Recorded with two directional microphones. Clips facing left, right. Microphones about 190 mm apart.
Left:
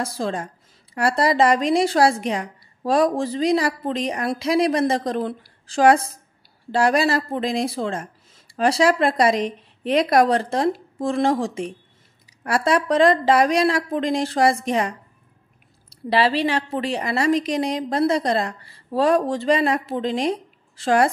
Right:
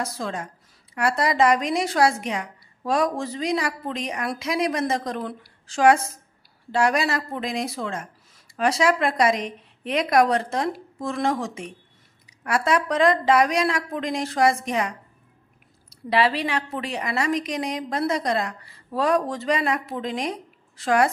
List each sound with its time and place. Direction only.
0.0 s a woman's voice: 30° left (ahead or behind)